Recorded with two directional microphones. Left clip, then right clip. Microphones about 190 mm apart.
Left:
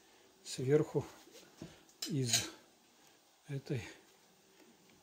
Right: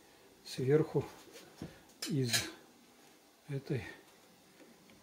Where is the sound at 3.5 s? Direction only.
30° left (ahead or behind).